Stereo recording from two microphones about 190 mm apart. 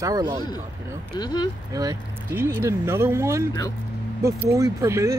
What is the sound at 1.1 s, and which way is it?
Speech, 25° left (ahead or behind).